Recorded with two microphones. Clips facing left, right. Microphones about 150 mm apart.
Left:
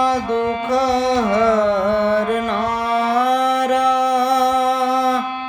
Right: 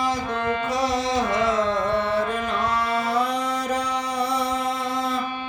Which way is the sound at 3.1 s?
65° left (ahead or behind).